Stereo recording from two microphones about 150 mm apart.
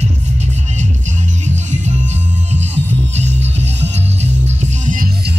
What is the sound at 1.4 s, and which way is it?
Music, 50° right (ahead or behind).